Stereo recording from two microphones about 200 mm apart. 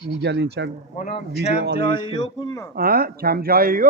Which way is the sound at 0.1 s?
60° right (ahead or behind).